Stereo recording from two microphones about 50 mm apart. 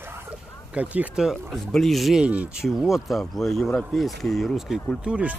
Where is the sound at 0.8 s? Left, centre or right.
Right.